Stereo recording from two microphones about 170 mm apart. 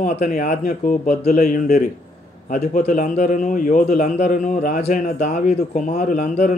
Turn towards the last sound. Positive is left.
turn(degrees=50)  # may be behind; listen again after turning